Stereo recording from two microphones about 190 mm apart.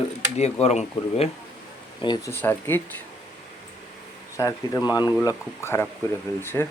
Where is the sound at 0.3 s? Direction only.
35° left (ahead or behind).